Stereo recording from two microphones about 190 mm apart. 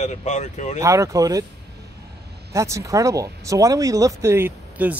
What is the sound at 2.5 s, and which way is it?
Speech, 15° right (ahead or behind).